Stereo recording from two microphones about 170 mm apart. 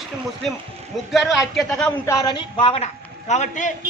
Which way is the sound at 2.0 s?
20° left (ahead or behind).